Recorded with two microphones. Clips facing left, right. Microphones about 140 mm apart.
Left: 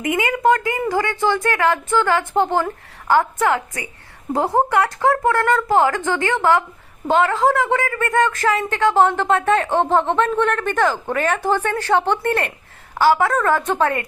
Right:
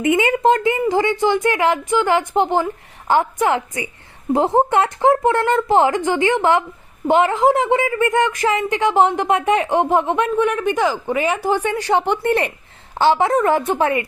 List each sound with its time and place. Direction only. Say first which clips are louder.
0.0 s a woman's voice: right 3 dB; 25° right (ahead or behind)